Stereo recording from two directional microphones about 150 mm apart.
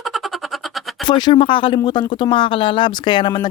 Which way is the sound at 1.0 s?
30° left (ahead or behind).